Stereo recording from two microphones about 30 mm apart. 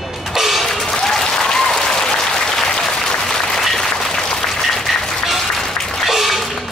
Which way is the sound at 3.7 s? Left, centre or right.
Centre.